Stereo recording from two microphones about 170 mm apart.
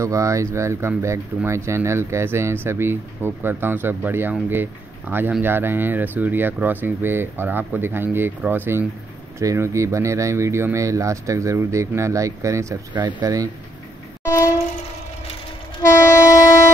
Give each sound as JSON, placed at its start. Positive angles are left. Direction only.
{"t": 0.0, "sound": "speech", "side_deg": -20}
{"t": 16.3, "sound": "train", "side_deg": 20}